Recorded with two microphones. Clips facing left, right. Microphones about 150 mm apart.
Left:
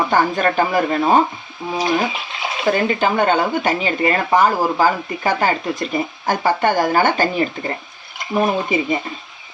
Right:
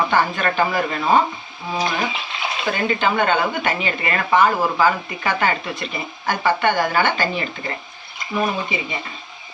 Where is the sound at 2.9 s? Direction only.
40° left (ahead or behind).